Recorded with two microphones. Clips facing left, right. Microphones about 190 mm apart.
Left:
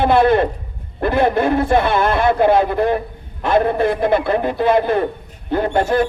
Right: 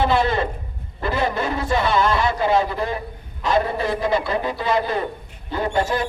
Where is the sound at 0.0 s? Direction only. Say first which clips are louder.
Left 6 dB; 55° left (ahead or behind).